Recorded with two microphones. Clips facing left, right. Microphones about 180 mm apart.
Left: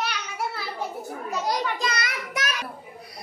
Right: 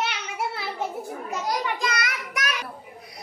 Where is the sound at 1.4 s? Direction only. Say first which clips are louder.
Even; 25° left (ahead or behind).